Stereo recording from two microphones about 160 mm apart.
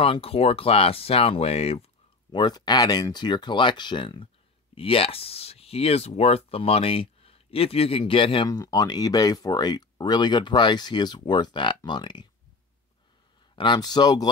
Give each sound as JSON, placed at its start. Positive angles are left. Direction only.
{"t": 0.0, "sound": "speech", "side_deg": 35}
{"t": 2.3, "sound": "speech", "side_deg": 25}
{"t": 8.5, "sound": "speech", "side_deg": 25}
{"t": 13.6, "sound": "speech", "side_deg": 25}